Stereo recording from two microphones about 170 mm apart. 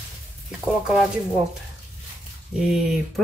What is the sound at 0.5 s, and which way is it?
Speech, 5° right (ahead or behind).